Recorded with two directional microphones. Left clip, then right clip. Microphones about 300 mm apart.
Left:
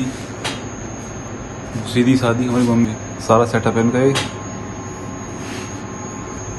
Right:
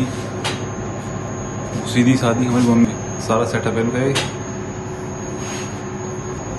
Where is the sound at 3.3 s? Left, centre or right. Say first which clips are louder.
Left 4 dB; centre.